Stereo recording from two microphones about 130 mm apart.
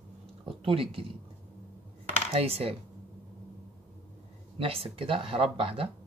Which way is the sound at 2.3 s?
50° right (ahead or behind).